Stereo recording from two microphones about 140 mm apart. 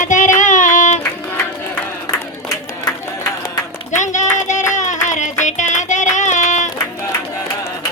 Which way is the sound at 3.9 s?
60° left (ahead or behind).